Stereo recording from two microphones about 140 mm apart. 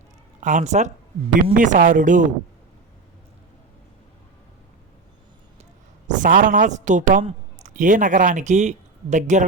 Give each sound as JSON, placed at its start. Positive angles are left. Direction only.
{"t": 0.3, "sound": "speech", "side_deg": -60}
{"t": 6.1, "sound": "a woman's voice", "side_deg": -65}